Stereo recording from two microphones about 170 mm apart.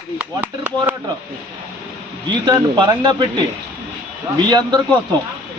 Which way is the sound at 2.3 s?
25° right (ahead or behind).